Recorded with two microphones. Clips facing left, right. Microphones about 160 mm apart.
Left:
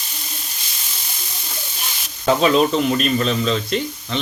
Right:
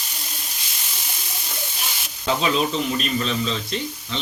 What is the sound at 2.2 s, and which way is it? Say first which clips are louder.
Speech: left 6 dB; 50° left (ahead or behind).